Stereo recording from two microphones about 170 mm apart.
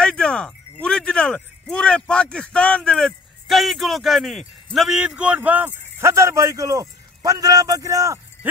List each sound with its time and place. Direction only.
0.0 s a man's voice: 5° left (ahead or behind); by 8.2 s 20° right (ahead or behind)